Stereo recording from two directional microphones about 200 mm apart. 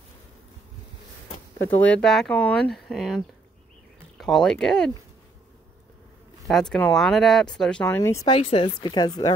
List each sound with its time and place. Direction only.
1.7 s speech: 5° left (ahead or behind)
6.4 s speech: centre (ahead or behind)
8.3 s speech: 30° left (ahead or behind)